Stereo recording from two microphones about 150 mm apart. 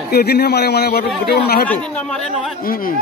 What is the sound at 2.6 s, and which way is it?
Speech, 75° left (ahead or behind).